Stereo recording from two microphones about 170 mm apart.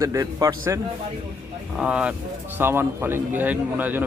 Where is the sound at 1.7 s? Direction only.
5° right (ahead or behind).